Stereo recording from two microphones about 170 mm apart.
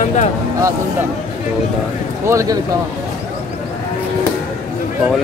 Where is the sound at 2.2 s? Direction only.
15° right (ahead or behind).